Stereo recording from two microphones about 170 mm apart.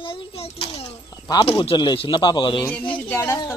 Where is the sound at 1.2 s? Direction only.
25° left (ahead or behind).